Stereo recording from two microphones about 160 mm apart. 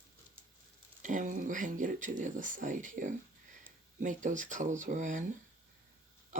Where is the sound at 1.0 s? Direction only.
55° right (ahead or behind).